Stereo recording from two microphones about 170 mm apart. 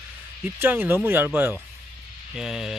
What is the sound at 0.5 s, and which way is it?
Speech, 10° right (ahead or behind).